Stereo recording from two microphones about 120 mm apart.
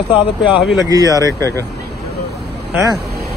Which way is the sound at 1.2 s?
25° left (ahead or behind).